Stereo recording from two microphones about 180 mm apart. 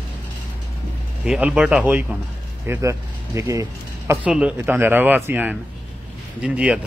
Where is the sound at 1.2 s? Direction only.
5° right (ahead or behind).